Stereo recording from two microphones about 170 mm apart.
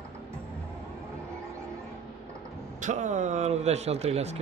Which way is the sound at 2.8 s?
45° right (ahead or behind).